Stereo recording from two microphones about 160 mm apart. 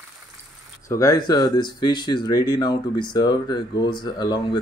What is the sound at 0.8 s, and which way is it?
Speech, 20° left (ahead or behind).